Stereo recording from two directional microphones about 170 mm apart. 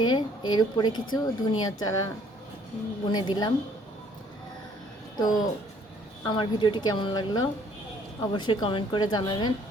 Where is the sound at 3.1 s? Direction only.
25° left (ahead or behind).